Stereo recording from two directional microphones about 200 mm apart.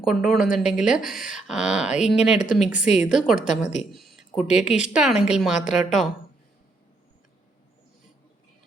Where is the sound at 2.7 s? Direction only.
40° left (ahead or behind).